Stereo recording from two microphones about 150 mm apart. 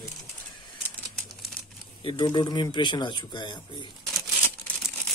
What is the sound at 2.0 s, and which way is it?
Speech, 30° left (ahead or behind).